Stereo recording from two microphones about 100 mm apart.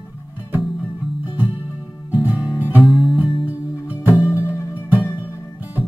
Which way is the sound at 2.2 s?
15° right (ahead or behind).